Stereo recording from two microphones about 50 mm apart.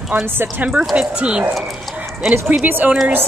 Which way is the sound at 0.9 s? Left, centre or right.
Right.